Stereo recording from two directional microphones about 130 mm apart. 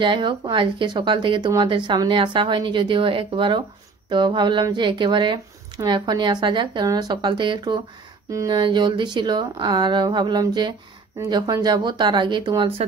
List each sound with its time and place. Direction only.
0.0 s speech: 40° right (ahead or behind)